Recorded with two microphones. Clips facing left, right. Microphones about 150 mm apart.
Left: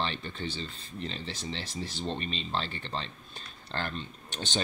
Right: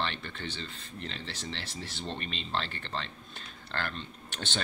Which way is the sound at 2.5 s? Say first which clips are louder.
Right 2 dB; 15° left (ahead or behind).